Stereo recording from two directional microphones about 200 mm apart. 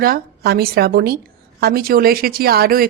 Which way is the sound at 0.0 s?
50° right (ahead or behind).